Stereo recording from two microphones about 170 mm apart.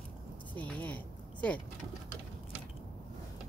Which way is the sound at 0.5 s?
10° left (ahead or behind).